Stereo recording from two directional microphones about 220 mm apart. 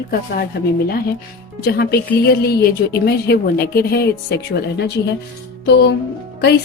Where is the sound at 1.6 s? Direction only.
45° left (ahead or behind).